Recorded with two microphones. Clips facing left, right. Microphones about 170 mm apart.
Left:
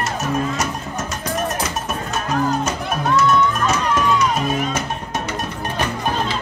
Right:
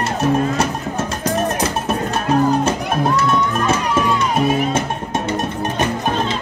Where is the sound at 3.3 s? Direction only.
30° right (ahead or behind).